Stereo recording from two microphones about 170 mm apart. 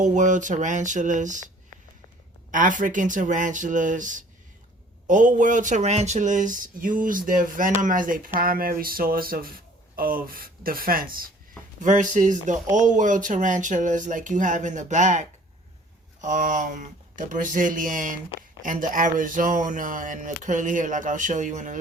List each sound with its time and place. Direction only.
0.0 s speech: 45° right (ahead or behind)
2.5 s speech: 50° right (ahead or behind)
16.2 s speech: 45° right (ahead or behind)